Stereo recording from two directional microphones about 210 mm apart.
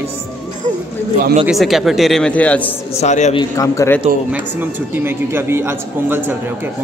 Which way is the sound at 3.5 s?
15° left (ahead or behind).